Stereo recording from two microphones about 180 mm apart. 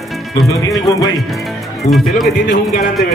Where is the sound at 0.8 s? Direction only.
20° left (ahead or behind).